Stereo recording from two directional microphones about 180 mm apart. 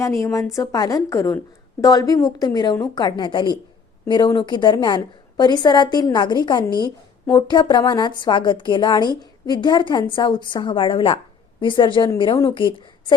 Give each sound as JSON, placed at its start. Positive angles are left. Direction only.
{"t": 0.0, "sound": "speech", "side_deg": 15}